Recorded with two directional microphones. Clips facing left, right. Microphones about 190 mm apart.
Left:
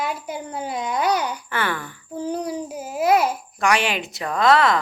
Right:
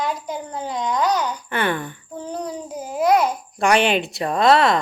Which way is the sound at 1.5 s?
20° right (ahead or behind).